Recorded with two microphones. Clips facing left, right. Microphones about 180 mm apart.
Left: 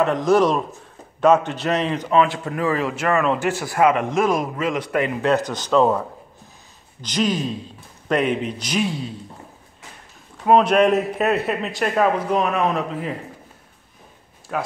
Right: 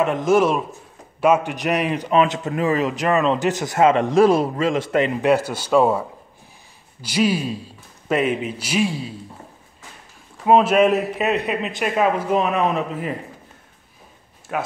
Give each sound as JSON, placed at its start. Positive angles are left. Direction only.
{"t": 0.3, "sound": "a man's voice", "side_deg": -5}
{"t": 5.2, "sound": "a man's voice", "side_deg": -10}
{"t": 10.4, "sound": "a man's voice", "side_deg": -5}
{"t": 14.5, "sound": "a man's voice", "side_deg": -5}